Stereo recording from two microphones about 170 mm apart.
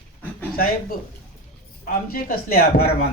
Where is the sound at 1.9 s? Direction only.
60° left (ahead or behind).